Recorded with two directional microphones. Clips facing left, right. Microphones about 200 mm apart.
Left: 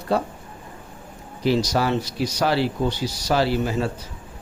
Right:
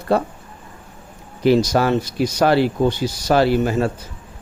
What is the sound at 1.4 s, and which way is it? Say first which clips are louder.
A man's voice: right 5 dB; 55° right (ahead or behind).